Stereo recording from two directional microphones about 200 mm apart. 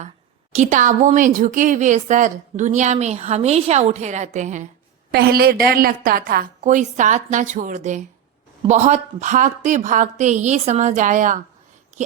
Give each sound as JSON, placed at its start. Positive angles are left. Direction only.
{"t": 0.5, "sound": "a woman's voice", "side_deg": -35}
{"t": 5.1, "sound": "a woman's voice", "side_deg": -50}